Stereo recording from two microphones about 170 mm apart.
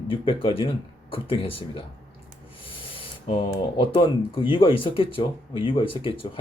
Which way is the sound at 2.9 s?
30° left (ahead or behind).